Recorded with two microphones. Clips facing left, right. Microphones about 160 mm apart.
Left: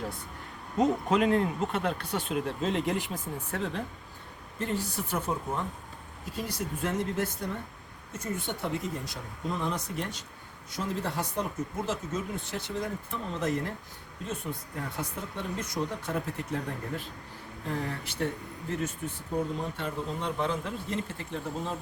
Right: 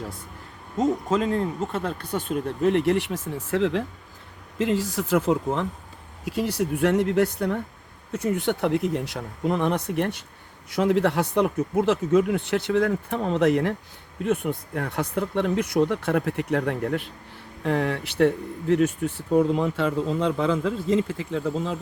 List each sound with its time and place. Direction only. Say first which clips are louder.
1.2 s speech: right 1 dB; 35° right (ahead or behind)
2.0 s speech: right 4 dB; 50° right (ahead or behind); by 5.6 s 90° right
6.2 s speech: right 10 dB; 75° right (ahead or behind); by 10.2 s 60° right (ahead or behind)
10.7 s speech: right 12 dB; 70° right (ahead or behind); by 21.8 s 90° right